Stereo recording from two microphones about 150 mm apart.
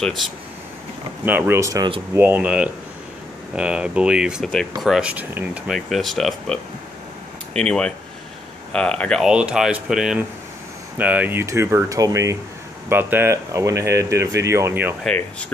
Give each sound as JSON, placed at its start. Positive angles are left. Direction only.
{"t": 1.2, "sound": "speech", "side_deg": -10}
{"t": 5.7, "sound": "speech", "side_deg": 0}
{"t": 9.2, "sound": "speech", "side_deg": -5}
{"t": 15.0, "sound": "speech", "side_deg": 10}